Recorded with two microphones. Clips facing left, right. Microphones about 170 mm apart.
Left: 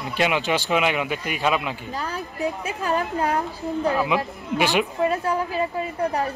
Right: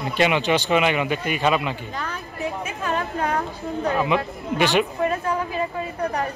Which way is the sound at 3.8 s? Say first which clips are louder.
Right 1 dB; 5° left (ahead or behind).